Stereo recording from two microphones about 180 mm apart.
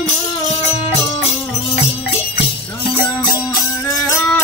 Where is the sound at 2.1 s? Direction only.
30° left (ahead or behind).